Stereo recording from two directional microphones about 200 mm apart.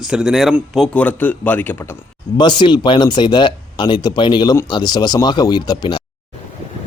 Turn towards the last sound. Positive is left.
turn(degrees=20)  # may be behind; listen again after turning